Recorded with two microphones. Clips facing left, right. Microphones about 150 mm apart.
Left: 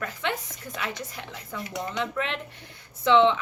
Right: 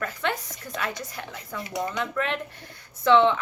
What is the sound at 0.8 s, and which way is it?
A woman's voice, 20° left (ahead or behind).